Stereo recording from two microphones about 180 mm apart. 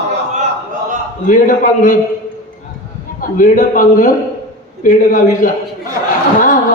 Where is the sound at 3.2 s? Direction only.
50° left (ahead or behind).